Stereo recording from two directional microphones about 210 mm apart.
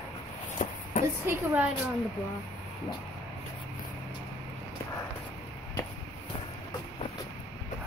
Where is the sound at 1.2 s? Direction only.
10° right (ahead or behind).